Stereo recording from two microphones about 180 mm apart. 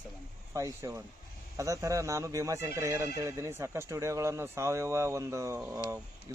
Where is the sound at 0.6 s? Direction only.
15° right (ahead or behind).